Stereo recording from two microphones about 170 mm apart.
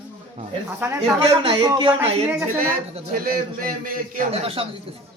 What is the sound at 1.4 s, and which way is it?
Speech, 30° right (ahead or behind).